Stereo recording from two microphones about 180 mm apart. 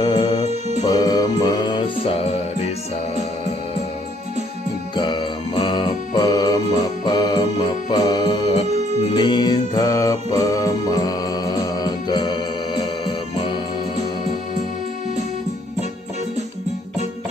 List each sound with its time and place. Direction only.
0.0 s music: 25° left (ahead or behind)
0.5 s music: 35° right (ahead or behind)
0.8 s music: 20° left (ahead or behind)
4.9 s music: 25° left (ahead or behind)